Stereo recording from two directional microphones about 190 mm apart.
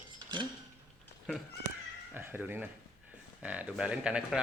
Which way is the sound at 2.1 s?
10° right (ahead or behind).